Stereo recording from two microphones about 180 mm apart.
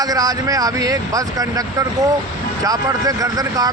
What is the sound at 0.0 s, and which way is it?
Speech, 20° right (ahead or behind).